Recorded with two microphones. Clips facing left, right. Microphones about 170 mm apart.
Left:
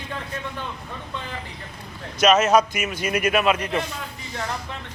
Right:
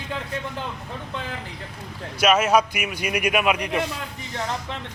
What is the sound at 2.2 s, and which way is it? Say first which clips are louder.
Speech: left 2 dB; 10° right (ahead or behind).